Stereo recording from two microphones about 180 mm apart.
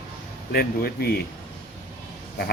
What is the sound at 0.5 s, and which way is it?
Speech, 60° left (ahead or behind).